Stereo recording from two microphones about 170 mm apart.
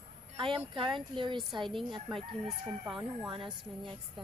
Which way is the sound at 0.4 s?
30° right (ahead or behind).